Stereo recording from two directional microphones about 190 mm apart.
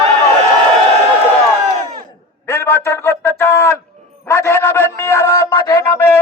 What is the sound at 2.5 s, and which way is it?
A man's voice, 10° left (ahead or behind).